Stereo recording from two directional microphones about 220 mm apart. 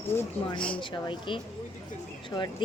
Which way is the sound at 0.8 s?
20° left (ahead or behind).